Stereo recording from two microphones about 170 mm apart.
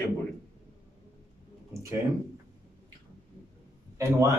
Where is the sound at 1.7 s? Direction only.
15° right (ahead or behind).